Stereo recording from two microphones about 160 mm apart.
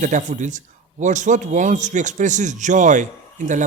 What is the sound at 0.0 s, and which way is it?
A man's voice, 50° right (ahead or behind).